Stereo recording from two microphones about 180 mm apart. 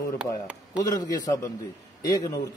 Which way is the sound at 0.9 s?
20° left (ahead or behind).